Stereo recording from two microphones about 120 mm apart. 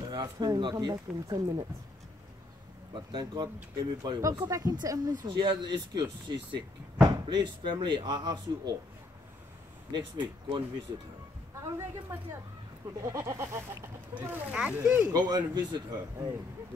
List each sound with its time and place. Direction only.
0.0 s speech: 40° right (ahead or behind)
2.9 s speech: 40° right (ahead or behind)
7.2 s speech: 40° right (ahead or behind)
9.9 s speech: 40° right (ahead or behind)
11.6 s goat: 25° right (ahead or behind)
14.1 s speech: 15° right (ahead or behind)
15.1 s speech: 35° right (ahead or behind)